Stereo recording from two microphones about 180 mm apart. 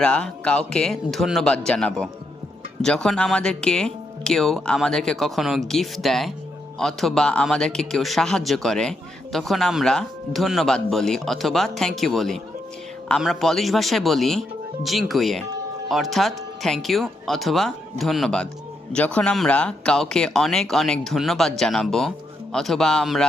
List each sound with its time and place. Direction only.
0.0 s speech: 5° left (ahead or behind)